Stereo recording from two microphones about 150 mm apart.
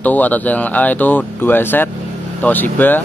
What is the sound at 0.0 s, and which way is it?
Speech, 10° left (ahead or behind).